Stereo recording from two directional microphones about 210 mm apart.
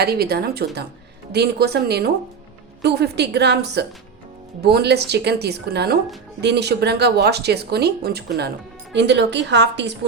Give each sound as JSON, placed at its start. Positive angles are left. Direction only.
{"t": 0.0, "sound": "speech", "side_deg": -50}